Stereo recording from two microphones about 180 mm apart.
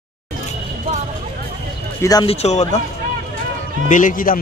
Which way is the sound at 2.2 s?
35° left (ahead or behind).